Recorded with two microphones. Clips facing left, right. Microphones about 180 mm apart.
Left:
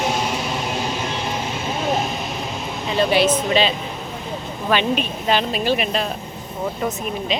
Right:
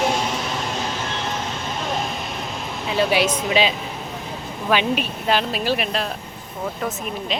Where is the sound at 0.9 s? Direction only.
15° left (ahead or behind).